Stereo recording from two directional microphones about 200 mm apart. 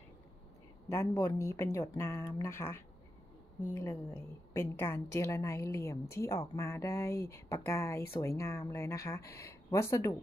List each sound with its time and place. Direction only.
0.8 s a woman's voice: 15° left (ahead or behind)